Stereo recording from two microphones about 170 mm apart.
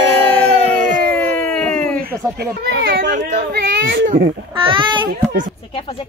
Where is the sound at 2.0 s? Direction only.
60° right (ahead or behind); by 3.2 s 75° right (ahead or behind).